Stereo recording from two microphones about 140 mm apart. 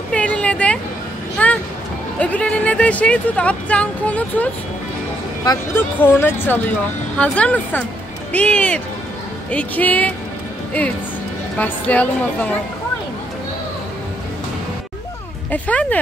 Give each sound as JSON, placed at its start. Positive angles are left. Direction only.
{"t": 0.1, "sound": "a sound", "side_deg": 10}
{"t": 1.4, "sound": "music", "side_deg": 10}
{"t": 2.1, "sound": "speech", "side_deg": 10}
{"t": 5.8, "sound": "speech", "side_deg": 15}
{"t": 11.5, "sound": "speech", "side_deg": 10}
{"t": 15.5, "sound": "speech", "side_deg": 10}